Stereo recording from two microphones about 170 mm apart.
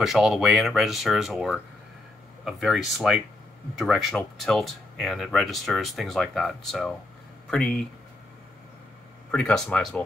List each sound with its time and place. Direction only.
0.0 s speech: centre (ahead or behind)
9.3 s speech: 5° left (ahead or behind)